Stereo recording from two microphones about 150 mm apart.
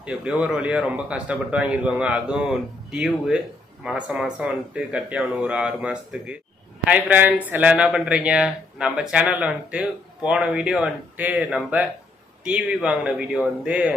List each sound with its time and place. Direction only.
0.0 s a man's voice: 5° right (ahead or behind)